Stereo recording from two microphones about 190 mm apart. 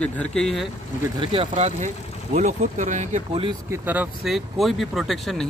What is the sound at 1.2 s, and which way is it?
Speech, 30° right (ahead or behind).